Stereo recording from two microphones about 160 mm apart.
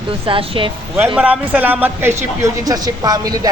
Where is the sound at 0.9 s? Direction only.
10° right (ahead or behind).